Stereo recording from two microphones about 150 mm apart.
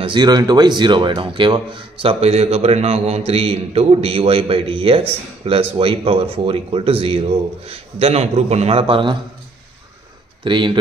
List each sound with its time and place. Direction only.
0.0 s speech: 30° right (ahead or behind)
10.4 s speech: 30° right (ahead or behind)